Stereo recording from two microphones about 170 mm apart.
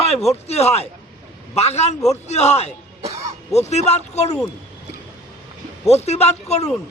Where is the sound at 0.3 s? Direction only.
40° left (ahead or behind).